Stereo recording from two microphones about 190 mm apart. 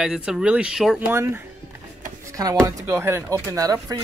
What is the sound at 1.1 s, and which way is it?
Speech, 15° right (ahead or behind).